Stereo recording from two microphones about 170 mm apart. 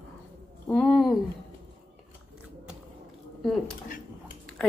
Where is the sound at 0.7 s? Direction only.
5° left (ahead or behind).